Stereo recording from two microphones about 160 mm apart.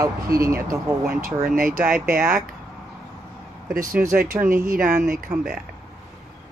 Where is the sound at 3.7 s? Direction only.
60° right (ahead or behind).